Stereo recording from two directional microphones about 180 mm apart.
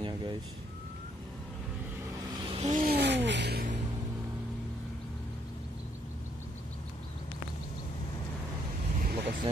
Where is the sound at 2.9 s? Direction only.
70° right (ahead or behind).